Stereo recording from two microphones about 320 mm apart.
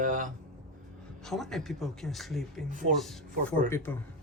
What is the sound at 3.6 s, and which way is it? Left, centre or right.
Speech, centre.